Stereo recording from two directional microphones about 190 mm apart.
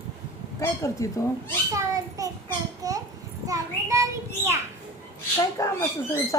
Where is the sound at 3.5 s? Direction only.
15° right (ahead or behind).